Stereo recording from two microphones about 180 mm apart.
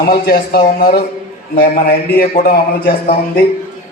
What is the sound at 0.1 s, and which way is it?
Speech, 60° left (ahead or behind).